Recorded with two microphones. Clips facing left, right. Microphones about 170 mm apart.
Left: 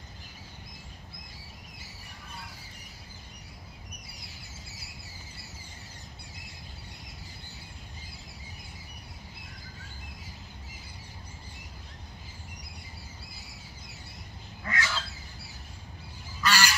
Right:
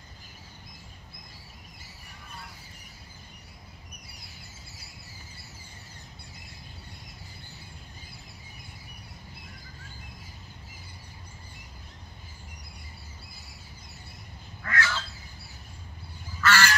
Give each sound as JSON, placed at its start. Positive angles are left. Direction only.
{"t": 14.6, "sound": "goose", "side_deg": 15}
{"t": 16.3, "sound": "goose", "side_deg": 15}